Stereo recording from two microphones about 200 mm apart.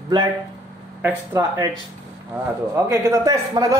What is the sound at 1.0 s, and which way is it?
Speech, 10° right (ahead or behind).